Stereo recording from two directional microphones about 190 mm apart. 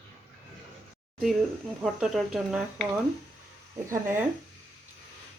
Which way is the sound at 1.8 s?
Centre (ahead or behind).